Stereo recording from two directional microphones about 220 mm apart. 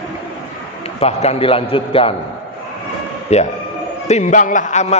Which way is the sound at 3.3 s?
30° left (ahead or behind).